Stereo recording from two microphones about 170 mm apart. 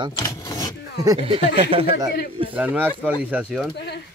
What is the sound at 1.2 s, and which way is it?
Speech, 30° right (ahead or behind).